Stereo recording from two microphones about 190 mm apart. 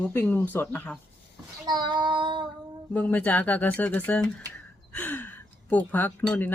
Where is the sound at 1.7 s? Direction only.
20° right (ahead or behind).